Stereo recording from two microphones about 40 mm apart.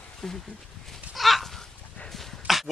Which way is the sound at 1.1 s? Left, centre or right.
Centre.